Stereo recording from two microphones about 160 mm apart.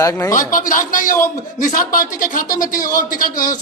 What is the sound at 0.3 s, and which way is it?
A man's voice, 55° left (ahead or behind).